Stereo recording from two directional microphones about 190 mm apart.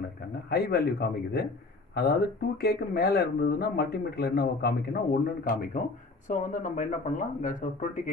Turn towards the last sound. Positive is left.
turn(degrees=45)  # may be behind; listen again after turning